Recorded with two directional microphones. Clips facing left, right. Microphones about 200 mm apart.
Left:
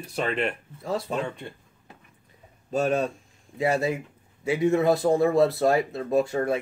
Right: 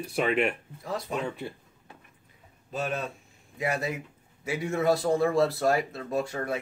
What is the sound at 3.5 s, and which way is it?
Speech, 30° left (ahead or behind).